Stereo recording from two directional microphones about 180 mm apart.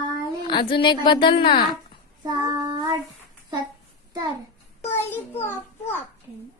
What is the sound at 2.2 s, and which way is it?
Child singing, 25° right (ahead or behind).